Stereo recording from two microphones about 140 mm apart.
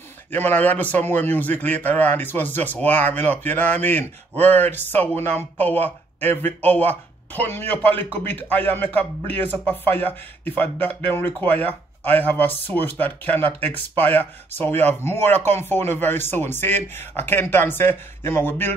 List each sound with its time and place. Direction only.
0.3 s speech: 15° left (ahead or behind)